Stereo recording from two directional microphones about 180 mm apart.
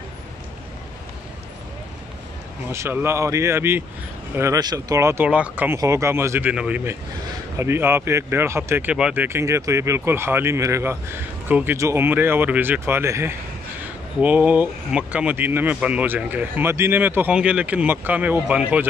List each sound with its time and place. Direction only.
2.7 s speech: 15° right (ahead or behind)